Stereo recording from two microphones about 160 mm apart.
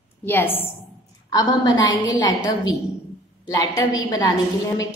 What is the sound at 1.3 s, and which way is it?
A woman's voice, 25° left (ahead or behind).